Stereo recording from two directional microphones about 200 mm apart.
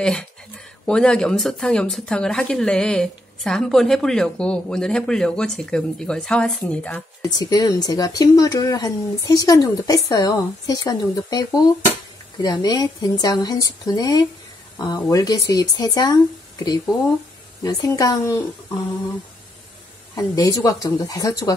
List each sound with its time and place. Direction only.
0.0 s speech: 5° left (ahead or behind)
7.2 s speech: 20° left (ahead or behind)
20.2 s speech: 15° left (ahead or behind)